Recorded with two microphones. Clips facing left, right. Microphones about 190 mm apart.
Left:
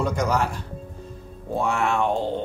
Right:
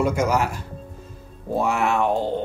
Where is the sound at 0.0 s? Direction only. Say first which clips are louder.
Right 2 dB; 5° right (ahead or behind).